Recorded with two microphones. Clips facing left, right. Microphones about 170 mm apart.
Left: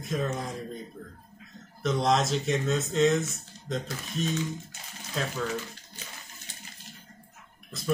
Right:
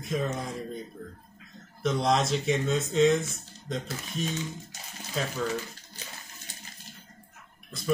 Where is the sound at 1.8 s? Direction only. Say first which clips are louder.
Even; centre (ahead or behind).